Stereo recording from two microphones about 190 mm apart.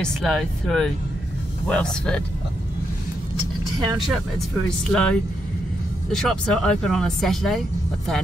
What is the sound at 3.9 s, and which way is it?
Speech, centre (ahead or behind).